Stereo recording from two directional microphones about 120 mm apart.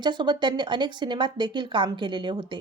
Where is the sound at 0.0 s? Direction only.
40° right (ahead or behind).